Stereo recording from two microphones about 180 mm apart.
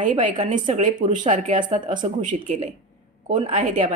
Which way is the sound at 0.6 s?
30° right (ahead or behind).